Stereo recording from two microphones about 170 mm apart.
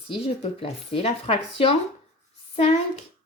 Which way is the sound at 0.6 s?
35° left (ahead or behind).